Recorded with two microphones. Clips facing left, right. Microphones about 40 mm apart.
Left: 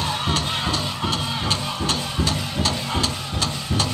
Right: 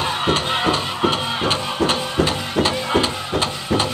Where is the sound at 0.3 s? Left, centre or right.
Right.